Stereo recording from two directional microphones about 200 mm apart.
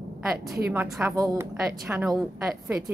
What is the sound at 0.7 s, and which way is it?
A woman's voice, 5° right (ahead or behind).